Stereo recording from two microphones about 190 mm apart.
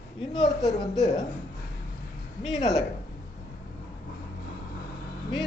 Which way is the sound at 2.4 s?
25° left (ahead or behind).